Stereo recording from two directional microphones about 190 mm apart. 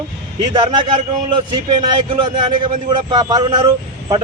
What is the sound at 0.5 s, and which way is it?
A man's voice, 25° right (ahead or behind).